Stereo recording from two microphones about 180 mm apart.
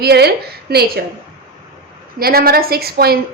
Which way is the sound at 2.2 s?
55° right (ahead or behind).